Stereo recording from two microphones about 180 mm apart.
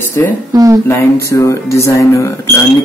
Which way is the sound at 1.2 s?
15° left (ahead or behind).